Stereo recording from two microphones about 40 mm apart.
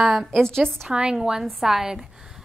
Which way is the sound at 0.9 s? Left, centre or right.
Centre.